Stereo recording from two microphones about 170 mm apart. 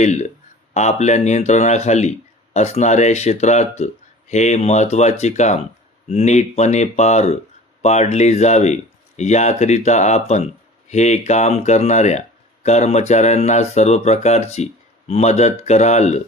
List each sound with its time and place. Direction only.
0.0 s speech: 40° left (ahead or behind)